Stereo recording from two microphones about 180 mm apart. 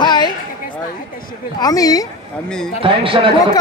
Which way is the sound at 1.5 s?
20° left (ahead or behind).